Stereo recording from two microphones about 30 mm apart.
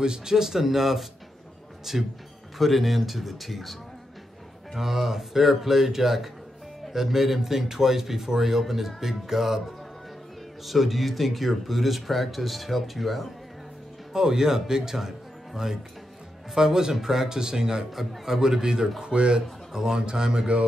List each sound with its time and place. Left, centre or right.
0.0 s a man's voice: right; by 3.7 s centre
4.7 s a man's voice: centre
14.1 s a man's voice: centre
17.9 s a man's voice: centre
19.0 s speech: right
19.7 s speech: right